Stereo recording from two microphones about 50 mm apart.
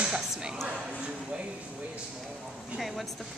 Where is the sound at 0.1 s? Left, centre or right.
Centre.